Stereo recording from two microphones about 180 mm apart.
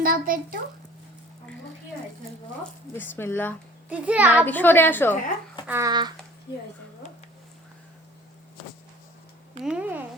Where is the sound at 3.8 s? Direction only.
5° right (ahead or behind).